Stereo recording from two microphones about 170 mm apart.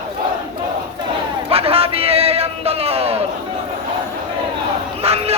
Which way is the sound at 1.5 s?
35° right (ahead or behind).